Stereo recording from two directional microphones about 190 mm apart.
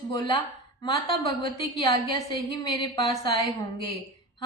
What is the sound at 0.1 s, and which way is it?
Speech, 25° left (ahead or behind).